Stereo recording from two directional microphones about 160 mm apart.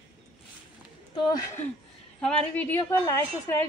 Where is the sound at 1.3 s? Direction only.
20° left (ahead or behind).